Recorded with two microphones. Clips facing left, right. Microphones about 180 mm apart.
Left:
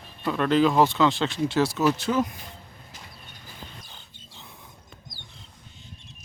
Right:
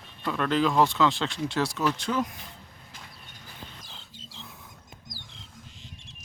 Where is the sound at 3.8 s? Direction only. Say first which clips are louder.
Even; 90° right.